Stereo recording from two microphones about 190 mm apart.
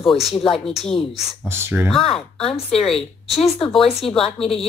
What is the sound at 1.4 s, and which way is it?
Speech, 10° right (ahead or behind).